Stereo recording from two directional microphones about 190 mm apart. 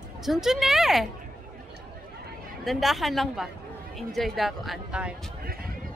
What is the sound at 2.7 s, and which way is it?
Speech, centre (ahead or behind).